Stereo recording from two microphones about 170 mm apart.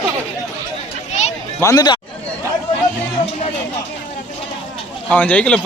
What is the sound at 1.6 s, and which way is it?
Speech, 20° left (ahead or behind).